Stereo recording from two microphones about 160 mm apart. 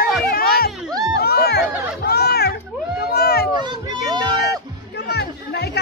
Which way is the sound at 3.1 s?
80° left.